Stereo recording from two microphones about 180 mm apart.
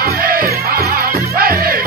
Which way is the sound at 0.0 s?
55° right (ahead or behind).